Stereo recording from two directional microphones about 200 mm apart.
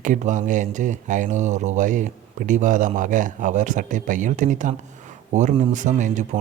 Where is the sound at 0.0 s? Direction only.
40° right (ahead or behind).